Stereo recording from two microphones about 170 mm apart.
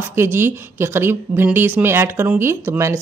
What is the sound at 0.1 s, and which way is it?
A woman's voice, 15° right (ahead or behind).